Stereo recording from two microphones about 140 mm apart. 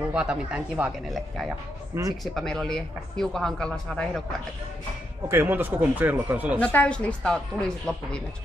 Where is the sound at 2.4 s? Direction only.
5° left (ahead or behind).